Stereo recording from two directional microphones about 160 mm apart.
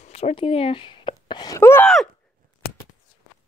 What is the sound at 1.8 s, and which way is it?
Speech, centre (ahead or behind).